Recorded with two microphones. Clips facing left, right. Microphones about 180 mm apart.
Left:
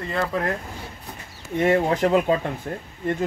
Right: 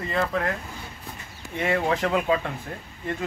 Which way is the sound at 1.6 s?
40° left (ahead or behind).